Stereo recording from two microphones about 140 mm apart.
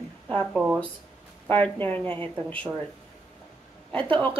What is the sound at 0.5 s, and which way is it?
Speech, 10° right (ahead or behind).